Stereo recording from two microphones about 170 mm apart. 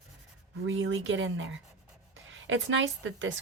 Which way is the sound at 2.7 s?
90° right.